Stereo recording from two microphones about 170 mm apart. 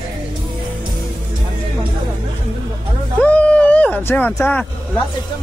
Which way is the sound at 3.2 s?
10° left (ahead or behind).